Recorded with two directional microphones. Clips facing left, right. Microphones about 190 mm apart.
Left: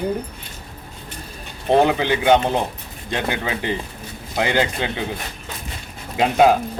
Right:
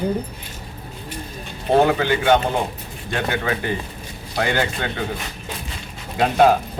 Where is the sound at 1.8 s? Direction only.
15° left (ahead or behind).